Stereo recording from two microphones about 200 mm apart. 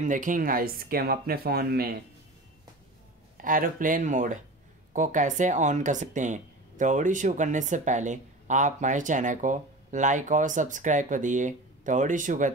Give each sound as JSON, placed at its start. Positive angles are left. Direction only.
{"t": 0.0, "sound": "speech", "side_deg": -40}
{"t": 3.3, "sound": "speech", "side_deg": -45}